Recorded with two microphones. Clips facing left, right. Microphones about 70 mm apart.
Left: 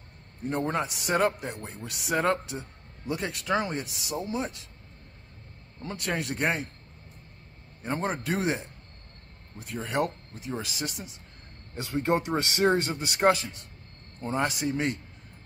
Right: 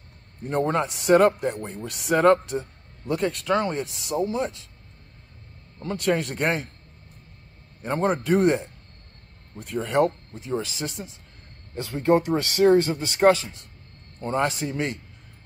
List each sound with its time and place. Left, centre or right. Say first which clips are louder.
0.5 s a man's voice: right 5 dB; centre
5.8 s a man's voice: right 8 dB; centre
7.8 s a man's voice: right 6 dB; centre
11.7 s speech: right 6 dB; centre
13.2 s a man's voice: right 5 dB; centre